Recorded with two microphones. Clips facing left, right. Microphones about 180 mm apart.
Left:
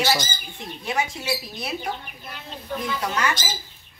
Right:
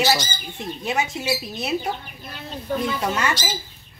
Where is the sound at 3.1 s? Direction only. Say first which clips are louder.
Right 1 dB; 25° right (ahead or behind).